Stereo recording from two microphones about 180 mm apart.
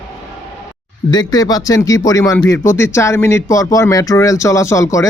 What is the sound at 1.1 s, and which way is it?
A man's voice, 20° left (ahead or behind).